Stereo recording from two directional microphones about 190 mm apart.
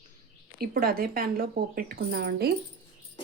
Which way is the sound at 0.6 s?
50° right (ahead or behind).